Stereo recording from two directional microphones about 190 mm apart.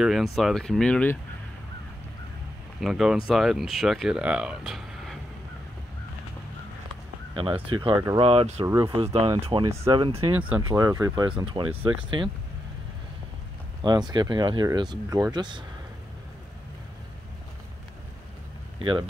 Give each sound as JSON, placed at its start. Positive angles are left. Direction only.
{"t": 0.0, "sound": "speech", "side_deg": 0}
{"t": 2.8, "sound": "speech", "side_deg": 0}
{"t": 7.3, "sound": "speech", "side_deg": -25}
{"t": 10.1, "sound": "speech", "side_deg": -5}
{"t": 13.8, "sound": "speech", "side_deg": -20}
{"t": 18.8, "sound": "speech", "side_deg": -25}